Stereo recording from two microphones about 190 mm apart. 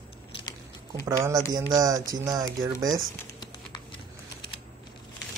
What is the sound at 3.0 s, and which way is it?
Typing, 20° left (ahead or behind).